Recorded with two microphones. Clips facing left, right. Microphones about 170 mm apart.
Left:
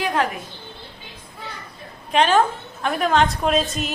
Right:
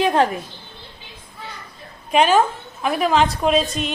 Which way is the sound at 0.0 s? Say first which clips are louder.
Right 5 dB; 30° right (ahead or behind).